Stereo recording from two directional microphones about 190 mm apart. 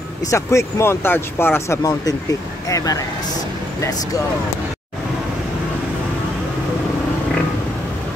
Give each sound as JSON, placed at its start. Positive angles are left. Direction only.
{"t": 0.3, "sound": "speech", "side_deg": 15}